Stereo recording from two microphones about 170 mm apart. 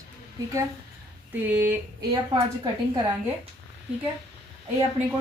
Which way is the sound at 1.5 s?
10° right (ahead or behind).